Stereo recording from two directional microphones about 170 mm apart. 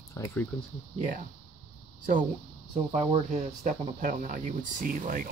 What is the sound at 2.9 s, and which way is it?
Speech, 40° right (ahead or behind).